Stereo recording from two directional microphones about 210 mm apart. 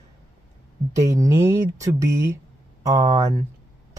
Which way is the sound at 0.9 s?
15° right (ahead or behind).